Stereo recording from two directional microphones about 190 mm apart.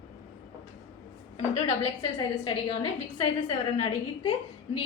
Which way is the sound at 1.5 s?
30° left (ahead or behind).